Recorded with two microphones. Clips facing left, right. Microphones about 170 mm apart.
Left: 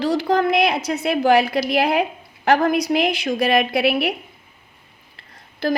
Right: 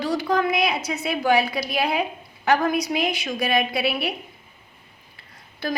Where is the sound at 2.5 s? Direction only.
65° left (ahead or behind).